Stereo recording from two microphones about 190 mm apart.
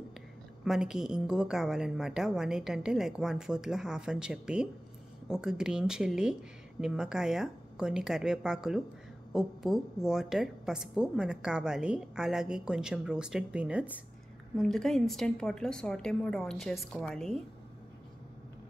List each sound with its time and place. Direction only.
0.7 s a woman's voice: 5° right (ahead or behind)